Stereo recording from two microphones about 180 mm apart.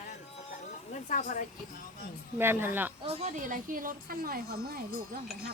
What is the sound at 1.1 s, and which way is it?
Speech, 50° left (ahead or behind).